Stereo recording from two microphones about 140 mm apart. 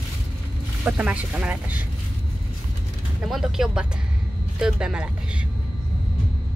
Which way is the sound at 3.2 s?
5° right (ahead or behind).